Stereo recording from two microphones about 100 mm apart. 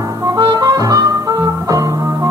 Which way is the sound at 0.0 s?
30° right (ahead or behind).